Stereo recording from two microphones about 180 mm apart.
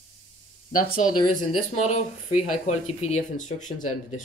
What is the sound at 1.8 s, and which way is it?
Speech, 40° left (ahead or behind).